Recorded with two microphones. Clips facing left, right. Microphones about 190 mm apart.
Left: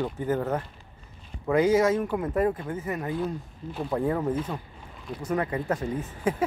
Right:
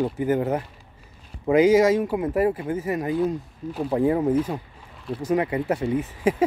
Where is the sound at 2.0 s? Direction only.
10° right (ahead or behind).